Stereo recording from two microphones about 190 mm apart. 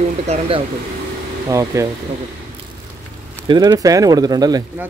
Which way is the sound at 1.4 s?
15° right (ahead or behind).